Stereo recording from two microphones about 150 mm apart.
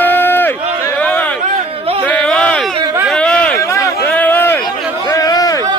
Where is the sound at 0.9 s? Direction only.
10° left (ahead or behind).